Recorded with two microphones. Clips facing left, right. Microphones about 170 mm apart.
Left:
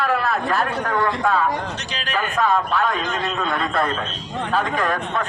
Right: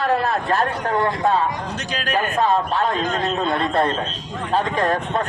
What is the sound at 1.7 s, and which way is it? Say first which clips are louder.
Speech: right 3 dB; 50° right (ahead or behind).